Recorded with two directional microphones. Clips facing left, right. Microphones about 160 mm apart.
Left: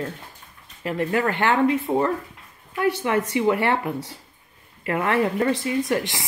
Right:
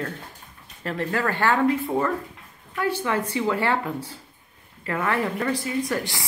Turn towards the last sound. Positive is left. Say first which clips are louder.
# left 3 dB
turn(degrees=20)  # may be behind; listen again after turning